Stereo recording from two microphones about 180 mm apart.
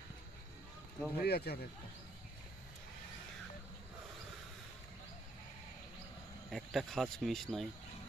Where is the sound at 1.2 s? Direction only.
60° left (ahead or behind).